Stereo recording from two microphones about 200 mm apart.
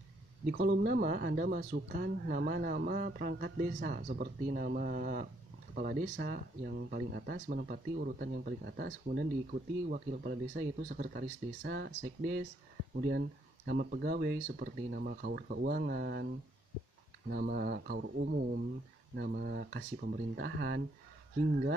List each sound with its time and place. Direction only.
0.5 s speech: 50° right (ahead or behind)
9.8 s speech: 50° right (ahead or behind)
13.7 s speech: 50° right (ahead or behind)
17.3 s speech: 50° right (ahead or behind)